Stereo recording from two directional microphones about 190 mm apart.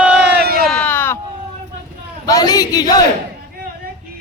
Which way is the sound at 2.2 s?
20° left (ahead or behind).